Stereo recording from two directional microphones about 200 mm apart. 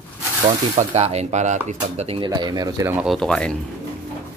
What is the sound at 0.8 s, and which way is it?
Speech, 35° right (ahead or behind).